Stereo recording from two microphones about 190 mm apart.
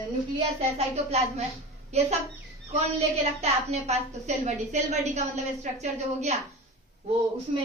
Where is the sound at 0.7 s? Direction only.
35° right (ahead or behind).